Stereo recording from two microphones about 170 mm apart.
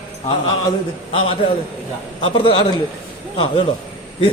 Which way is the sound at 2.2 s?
30° left (ahead or behind).